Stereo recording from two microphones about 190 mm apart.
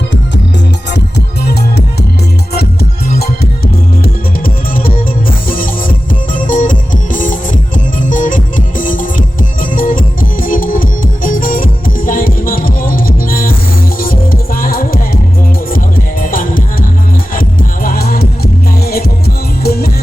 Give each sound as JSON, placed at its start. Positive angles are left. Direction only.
{"t": 4.0, "sound": "music", "side_deg": 50}
{"t": 19.6, "sound": "music", "side_deg": 55}